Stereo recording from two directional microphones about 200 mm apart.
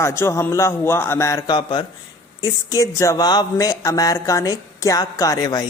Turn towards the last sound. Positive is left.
turn(degrees=20)  # may be behind; listen again after turning